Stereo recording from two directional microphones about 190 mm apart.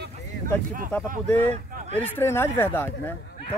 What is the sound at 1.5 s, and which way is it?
Speech, 35° right (ahead or behind).